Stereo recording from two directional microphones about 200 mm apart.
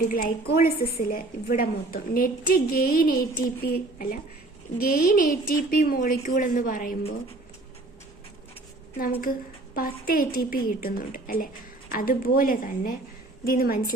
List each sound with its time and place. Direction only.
0.1 s a woman's voice: 45° left (ahead or behind)
9.7 s a woman's voice: 45° left (ahead or behind)